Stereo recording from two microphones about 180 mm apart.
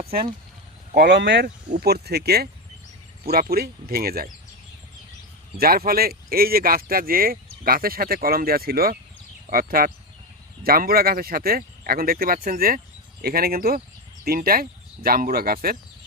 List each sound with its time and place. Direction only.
0.9 s speech: 70° right (ahead or behind)
5.5 s speech: 55° right (ahead or behind)